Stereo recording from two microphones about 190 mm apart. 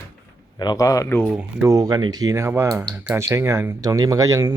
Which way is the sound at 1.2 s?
10° right (ahead or behind).